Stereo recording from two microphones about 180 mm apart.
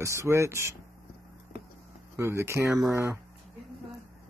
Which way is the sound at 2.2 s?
15° right (ahead or behind).